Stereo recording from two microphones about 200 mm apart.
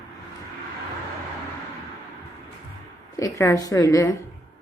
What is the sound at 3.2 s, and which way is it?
Speech, 15° left (ahead or behind).